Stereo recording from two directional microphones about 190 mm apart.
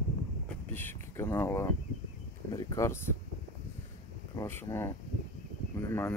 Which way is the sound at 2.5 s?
15° left (ahead or behind).